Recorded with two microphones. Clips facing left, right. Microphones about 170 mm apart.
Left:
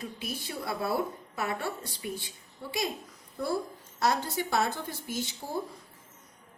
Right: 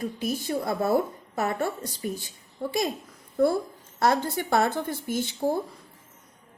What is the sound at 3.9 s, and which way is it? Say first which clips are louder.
Speech: right 5 dB; 50° right (ahead or behind).